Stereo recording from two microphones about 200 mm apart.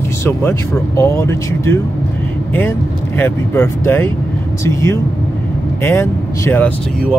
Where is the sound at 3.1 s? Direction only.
10° left (ahead or behind).